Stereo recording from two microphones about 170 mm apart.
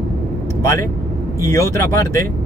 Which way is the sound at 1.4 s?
15° left (ahead or behind).